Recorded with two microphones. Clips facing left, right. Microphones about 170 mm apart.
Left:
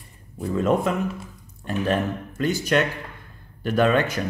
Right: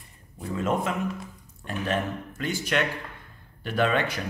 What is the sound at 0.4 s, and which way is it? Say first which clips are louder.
Speech: left 5 dB; 40° left (ahead or behind).